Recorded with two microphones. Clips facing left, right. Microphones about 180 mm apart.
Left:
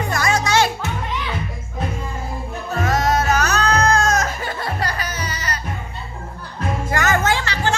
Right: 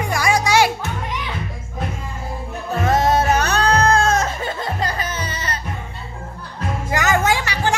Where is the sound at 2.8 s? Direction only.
30° right (ahead or behind).